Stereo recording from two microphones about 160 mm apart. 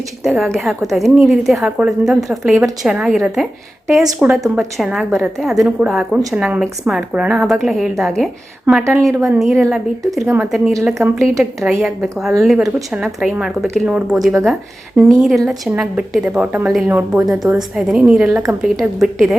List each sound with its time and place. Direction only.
0.3 s a woman's voice: centre (ahead or behind)
8.8 s speech: 20° right (ahead or behind)
9.4 s a woman's voice: centre (ahead or behind)